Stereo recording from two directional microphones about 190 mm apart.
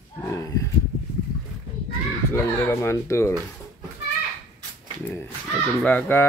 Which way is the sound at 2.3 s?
10° left (ahead or behind).